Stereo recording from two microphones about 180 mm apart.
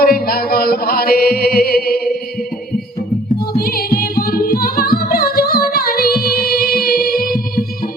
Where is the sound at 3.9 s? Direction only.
55° left (ahead or behind).